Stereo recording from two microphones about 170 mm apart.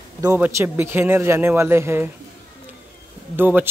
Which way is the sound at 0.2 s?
15° right (ahead or behind).